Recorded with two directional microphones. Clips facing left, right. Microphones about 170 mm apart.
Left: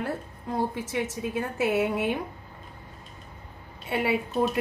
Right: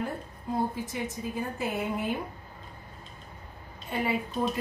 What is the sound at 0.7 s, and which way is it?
A woman's voice, 75° left (ahead or behind).